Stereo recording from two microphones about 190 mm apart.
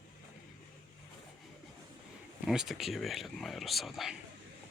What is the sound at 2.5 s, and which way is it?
Speech, centre (ahead or behind).